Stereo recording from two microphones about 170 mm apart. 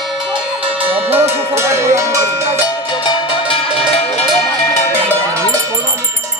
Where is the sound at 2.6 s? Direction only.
25° left (ahead or behind).